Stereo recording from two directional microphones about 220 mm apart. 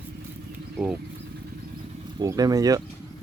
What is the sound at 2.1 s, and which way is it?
Speech, 15° right (ahead or behind).